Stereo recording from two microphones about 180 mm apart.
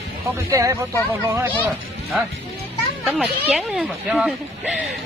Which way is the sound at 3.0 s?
Centre (ahead or behind).